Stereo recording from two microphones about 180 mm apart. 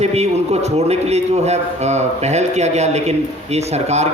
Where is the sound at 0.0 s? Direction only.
35° right (ahead or behind).